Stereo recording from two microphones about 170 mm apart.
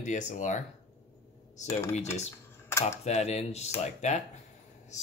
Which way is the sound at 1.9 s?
40° left (ahead or behind).